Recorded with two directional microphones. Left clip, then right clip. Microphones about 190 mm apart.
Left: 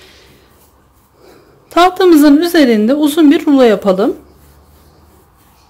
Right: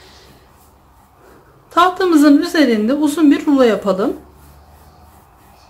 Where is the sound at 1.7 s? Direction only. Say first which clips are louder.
Left 5 dB; 45° left (ahead or behind).